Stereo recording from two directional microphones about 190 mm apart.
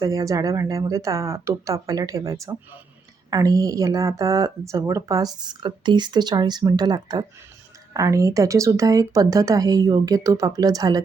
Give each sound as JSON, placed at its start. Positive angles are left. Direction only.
{"t": 0.0, "sound": "speech", "side_deg": -20}